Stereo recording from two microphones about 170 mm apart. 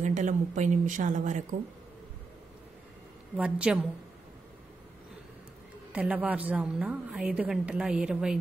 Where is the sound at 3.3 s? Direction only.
5° right (ahead or behind).